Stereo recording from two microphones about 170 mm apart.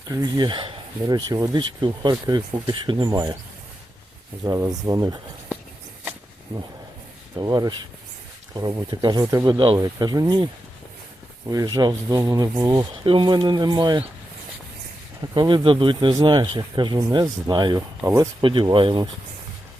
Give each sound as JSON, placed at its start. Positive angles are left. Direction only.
{"t": 0.1, "sound": "speech", "side_deg": -25}
{"t": 4.4, "sound": "speech", "side_deg": -20}
{"t": 7.3, "sound": "speech", "side_deg": -25}
{"t": 15.4, "sound": "speech", "side_deg": -25}
{"t": 18.4, "sound": "speech", "side_deg": -30}